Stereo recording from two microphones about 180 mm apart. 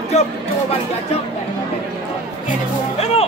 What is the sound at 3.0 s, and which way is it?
Music, 35° left (ahead or behind).